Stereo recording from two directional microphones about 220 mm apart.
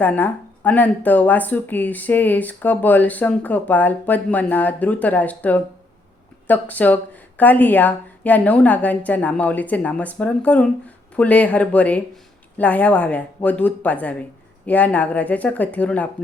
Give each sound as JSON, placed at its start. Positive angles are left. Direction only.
{"t": 0.0, "sound": "speech", "side_deg": 10}